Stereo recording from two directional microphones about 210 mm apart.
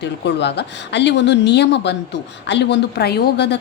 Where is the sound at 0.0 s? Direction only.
55° left (ahead or behind).